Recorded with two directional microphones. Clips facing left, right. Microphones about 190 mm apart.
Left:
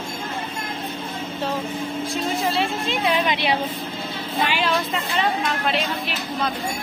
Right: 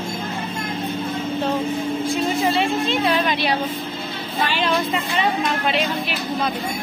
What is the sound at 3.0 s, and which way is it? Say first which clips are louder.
Speech: right 2 dB; 20° left (ahead or behind).